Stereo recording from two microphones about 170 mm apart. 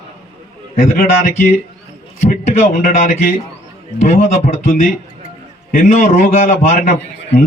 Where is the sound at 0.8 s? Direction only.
55° left (ahead or behind).